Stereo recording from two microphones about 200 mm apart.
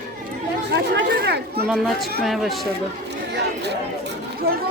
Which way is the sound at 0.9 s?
55° right (ahead or behind).